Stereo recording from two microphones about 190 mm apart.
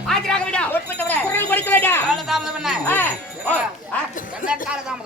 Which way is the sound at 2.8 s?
10° left (ahead or behind).